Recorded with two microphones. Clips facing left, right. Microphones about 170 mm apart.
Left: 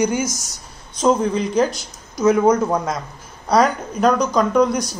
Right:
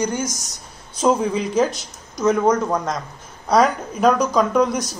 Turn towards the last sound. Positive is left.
turn(degrees=0)  # may be behind; listen again after turning